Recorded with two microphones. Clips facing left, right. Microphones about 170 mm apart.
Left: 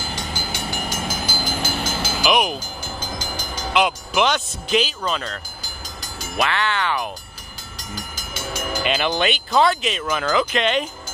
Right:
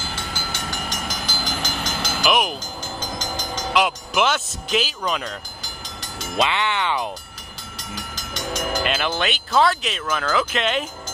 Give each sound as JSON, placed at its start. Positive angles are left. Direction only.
{"t": 0.1, "sound": "train", "side_deg": 15}
{"t": 3.7, "sound": "speech", "side_deg": -5}
{"t": 7.7, "sound": "train", "side_deg": 0}
{"t": 8.9, "sound": "speech", "side_deg": 0}